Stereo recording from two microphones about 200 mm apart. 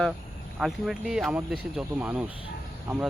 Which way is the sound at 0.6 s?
Centre (ahead or behind).